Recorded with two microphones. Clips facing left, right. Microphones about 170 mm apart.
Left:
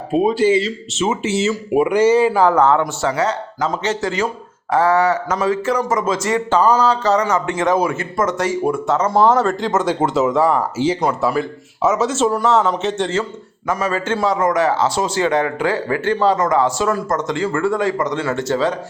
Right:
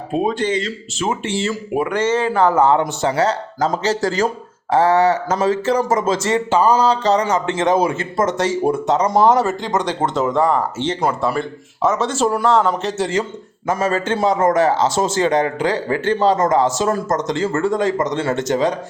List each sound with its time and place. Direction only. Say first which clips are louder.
0.1 s speech: left 4 dB; 5° left (ahead or behind)
2.6 s a man's voice: even; 15° right (ahead or behind)
3.2 s speech: right 2 dB; 35° right (ahead or behind)
4.7 s a man's voice: right 1 dB; 25° right (ahead or behind)
6.5 s a man's voice: even; 10° right (ahead or behind)
9.5 s speech: left 2 dB; centre (ahead or behind)
13.7 s a man's voice: right 1 dB; 25° right (ahead or behind)
14.9 s speech: right 2 dB; 45° right (ahead or behind)
15.5 s a man's voice: even; 20° right (ahead or behind)
16.6 s speech: even; 40° right (ahead or behind)
17.7 s a man's voice: even; 20° right (ahead or behind)